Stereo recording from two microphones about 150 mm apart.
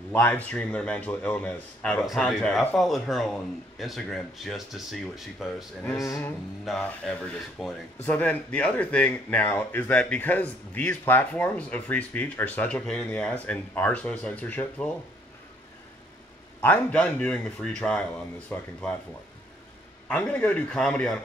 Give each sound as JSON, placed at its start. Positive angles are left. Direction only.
{"t": 0.1, "sound": "speech", "side_deg": 10}
{"t": 5.9, "sound": "music", "side_deg": 20}
{"t": 6.6, "sound": "speech", "side_deg": 5}
{"t": 16.6, "sound": "speech", "side_deg": 10}
{"t": 20.1, "sound": "speech", "side_deg": 10}